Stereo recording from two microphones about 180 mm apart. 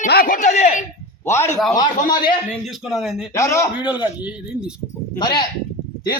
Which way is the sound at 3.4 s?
15° left (ahead or behind).